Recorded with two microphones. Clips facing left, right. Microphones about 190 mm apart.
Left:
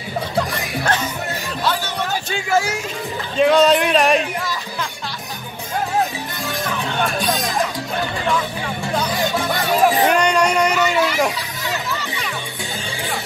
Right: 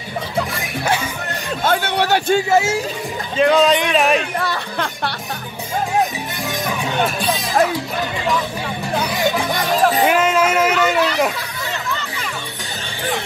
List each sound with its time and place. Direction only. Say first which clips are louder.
0.4 s music: even; 10° right (ahead or behind)
1.6 s music: right 5 dB; 55° right (ahead or behind); by 2.3 s 70° right (ahead or behind)
2.5 s speech: left 1 dB; 25° right (ahead or behind)
3.3 s speech: left 1 dB; centre (ahead or behind)
4.4 s speech: right 3 dB; 65° right (ahead or behind)
9.7 s music: left 1 dB; 5° left (ahead or behind)
10.0 s a sound: right 1 dB; 5° right (ahead or behind)
11.9 s music: even; centre (ahead or behind)